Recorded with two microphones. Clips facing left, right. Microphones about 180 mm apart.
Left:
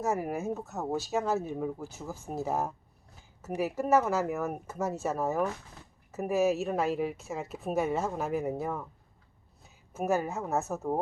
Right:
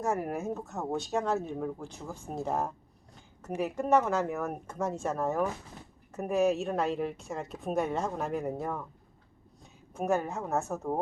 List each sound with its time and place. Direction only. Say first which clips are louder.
0.0 s speech: left 1 dB; 5° left (ahead or behind)
9.9 s speech: even; 5° left (ahead or behind)